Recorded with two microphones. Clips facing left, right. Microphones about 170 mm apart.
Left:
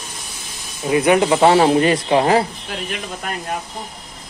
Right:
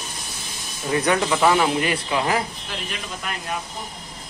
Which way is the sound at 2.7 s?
50° left (ahead or behind).